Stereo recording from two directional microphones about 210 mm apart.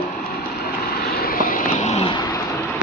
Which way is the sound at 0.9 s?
45° left (ahead or behind).